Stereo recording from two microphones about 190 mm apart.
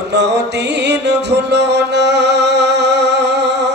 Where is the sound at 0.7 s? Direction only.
65° right (ahead or behind).